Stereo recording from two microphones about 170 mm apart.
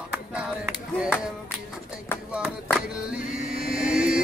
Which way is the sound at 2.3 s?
5° right (ahead or behind).